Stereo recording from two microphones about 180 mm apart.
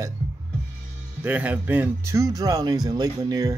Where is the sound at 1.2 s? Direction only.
10° right (ahead or behind).